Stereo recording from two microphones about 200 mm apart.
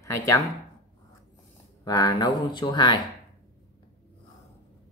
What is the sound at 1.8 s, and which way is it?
Speech, 20° left (ahead or behind).